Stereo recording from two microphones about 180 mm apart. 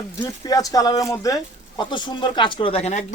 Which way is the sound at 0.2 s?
20° left (ahead or behind).